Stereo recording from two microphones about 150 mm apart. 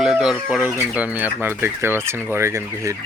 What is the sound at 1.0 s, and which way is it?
Speech, 10° right (ahead or behind).